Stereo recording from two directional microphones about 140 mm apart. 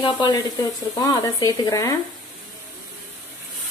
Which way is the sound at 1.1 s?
25° left (ahead or behind).